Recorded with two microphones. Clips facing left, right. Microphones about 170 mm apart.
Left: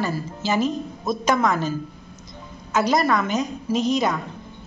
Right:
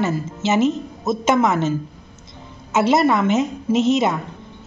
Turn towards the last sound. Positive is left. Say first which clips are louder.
# right 4 dB
turn(degrees=-25)  # may be behind; listen again after turning